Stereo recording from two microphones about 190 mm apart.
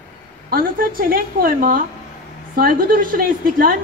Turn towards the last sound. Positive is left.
turn(degrees=-50)  # may be behind; listen again after turning